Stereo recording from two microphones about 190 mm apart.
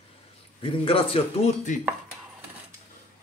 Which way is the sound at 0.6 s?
30° left (ahead or behind).